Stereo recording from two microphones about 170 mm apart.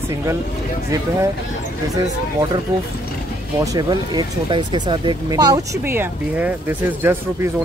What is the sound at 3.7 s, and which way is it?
Speech, 25° right (ahead or behind).